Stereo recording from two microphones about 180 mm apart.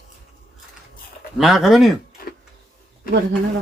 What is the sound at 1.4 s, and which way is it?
Speech, centre (ahead or behind).